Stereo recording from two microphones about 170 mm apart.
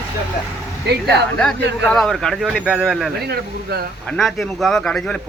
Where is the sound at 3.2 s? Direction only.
65° right (ahead or behind).